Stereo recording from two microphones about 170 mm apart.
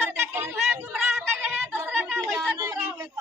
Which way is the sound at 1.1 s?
10° right (ahead or behind).